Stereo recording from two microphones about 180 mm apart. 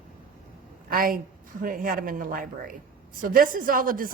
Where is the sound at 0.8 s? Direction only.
50° right (ahead or behind).